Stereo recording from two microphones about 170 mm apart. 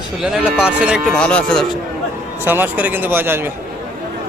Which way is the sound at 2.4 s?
10° right (ahead or behind).